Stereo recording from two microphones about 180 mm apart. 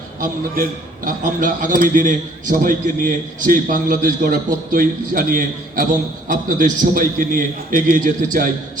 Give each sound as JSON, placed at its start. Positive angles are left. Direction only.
{"t": 0.2, "sound": "a man's voice", "side_deg": -50}